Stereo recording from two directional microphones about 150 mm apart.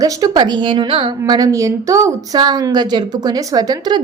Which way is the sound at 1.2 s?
25° right (ahead or behind).